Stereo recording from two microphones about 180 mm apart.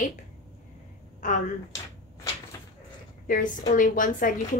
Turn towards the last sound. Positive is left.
turn(degrees=45)  # may be behind; listen again after turning